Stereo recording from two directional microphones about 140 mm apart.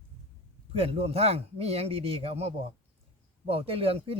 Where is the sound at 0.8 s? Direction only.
45° right (ahead or behind).